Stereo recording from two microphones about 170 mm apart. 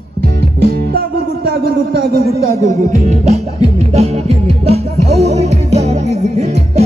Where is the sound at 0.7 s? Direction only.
65° right (ahead or behind).